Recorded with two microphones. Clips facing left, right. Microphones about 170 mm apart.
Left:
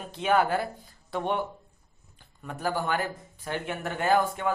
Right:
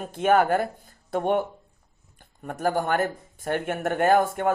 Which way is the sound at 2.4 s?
50° right (ahead or behind).